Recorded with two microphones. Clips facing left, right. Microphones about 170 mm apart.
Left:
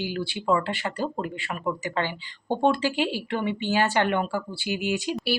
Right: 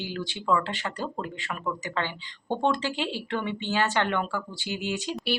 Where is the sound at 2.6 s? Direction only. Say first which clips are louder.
Left 4 dB; 10° left (ahead or behind).